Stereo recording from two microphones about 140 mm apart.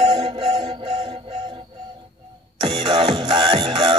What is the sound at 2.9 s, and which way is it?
Music, 35° right (ahead or behind).